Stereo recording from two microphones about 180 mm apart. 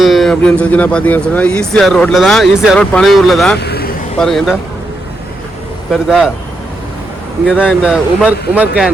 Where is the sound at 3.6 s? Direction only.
60° left (ahead or behind).